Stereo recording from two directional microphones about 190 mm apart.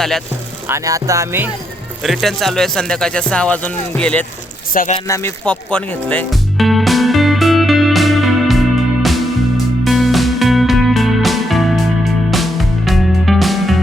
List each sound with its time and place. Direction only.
0.7 s music: 15° right (ahead or behind)
2.0 s speech: centre (ahead or behind)
4.7 s speech: 45° left (ahead or behind)
5.0 s music: 15° left (ahead or behind)